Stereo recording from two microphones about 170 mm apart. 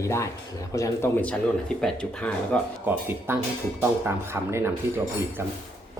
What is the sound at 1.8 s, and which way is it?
Speech, 5° left (ahead or behind).